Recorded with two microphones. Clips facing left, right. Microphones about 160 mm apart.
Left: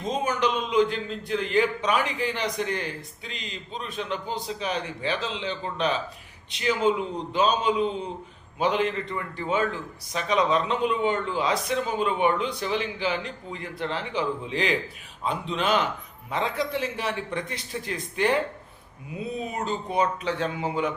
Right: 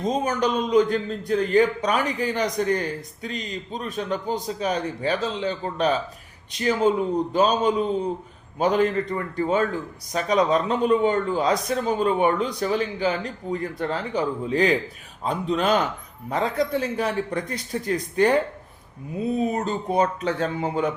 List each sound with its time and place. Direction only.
0.0 s speech: 40° right (ahead or behind)
19.5 s speech: 40° right (ahead or behind)